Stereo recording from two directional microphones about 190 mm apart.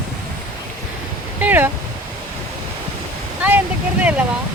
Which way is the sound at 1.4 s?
10° right (ahead or behind).